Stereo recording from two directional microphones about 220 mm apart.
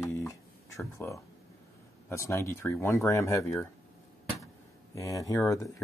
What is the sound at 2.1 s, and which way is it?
Speech, 15° left (ahead or behind).